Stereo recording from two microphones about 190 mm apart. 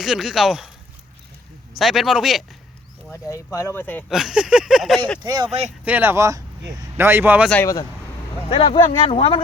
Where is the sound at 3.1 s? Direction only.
15° left (ahead or behind).